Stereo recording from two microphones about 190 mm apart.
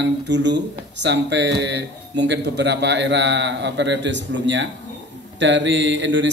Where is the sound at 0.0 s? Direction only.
65° right (ahead or behind).